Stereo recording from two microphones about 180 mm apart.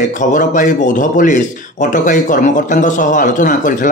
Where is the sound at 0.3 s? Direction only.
45° left (ahead or behind).